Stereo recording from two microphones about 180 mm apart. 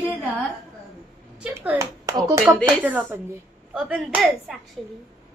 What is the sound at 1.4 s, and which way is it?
Speech, 10° right (ahead or behind).